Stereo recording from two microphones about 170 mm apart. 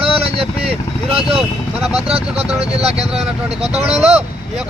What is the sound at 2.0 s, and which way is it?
Speech, 35° right (ahead or behind).